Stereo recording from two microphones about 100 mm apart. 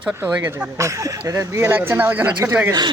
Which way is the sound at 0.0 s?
10° right (ahead or behind).